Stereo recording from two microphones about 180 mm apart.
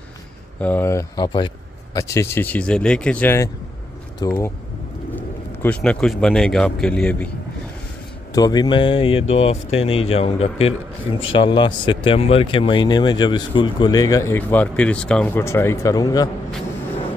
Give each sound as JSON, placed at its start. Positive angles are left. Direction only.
{"t": 0.6, "sound": "speech", "side_deg": 10}
{"t": 4.2, "sound": "speech", "side_deg": 20}
{"t": 5.1, "sound": "speech", "side_deg": 10}
{"t": 8.3, "sound": "speech", "side_deg": 20}